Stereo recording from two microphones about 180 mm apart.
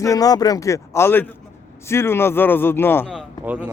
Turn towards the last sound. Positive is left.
turn(degrees=-10)  # may be behind; listen again after turning